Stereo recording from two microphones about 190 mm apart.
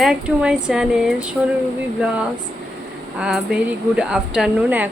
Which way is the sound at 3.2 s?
5° right (ahead or behind).